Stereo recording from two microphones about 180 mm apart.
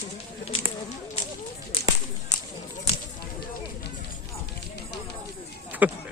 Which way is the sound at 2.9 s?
35° left (ahead or behind).